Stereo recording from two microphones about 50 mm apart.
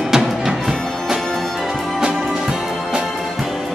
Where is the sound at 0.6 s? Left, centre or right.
Centre.